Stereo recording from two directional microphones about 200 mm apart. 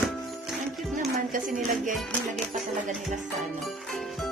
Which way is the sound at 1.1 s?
40° right (ahead or behind).